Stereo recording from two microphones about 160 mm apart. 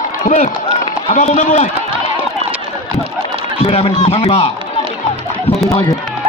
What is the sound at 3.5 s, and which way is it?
Speech, 40° left (ahead or behind).